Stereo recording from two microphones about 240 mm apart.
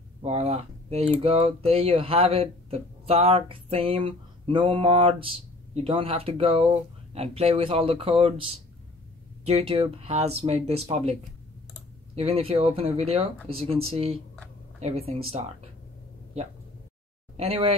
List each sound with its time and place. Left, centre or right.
0.2 s speech: right
12.2 s speech: right
17.4 s speech: right